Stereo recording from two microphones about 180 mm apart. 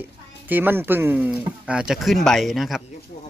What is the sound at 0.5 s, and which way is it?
Speech, 10° right (ahead or behind).